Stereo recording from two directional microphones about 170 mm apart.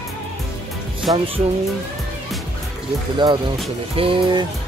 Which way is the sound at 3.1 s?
25° right (ahead or behind).